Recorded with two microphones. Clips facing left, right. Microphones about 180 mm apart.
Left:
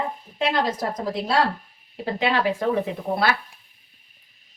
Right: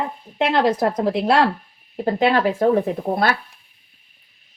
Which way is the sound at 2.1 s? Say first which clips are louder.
Right 4 dB; 45° right (ahead or behind).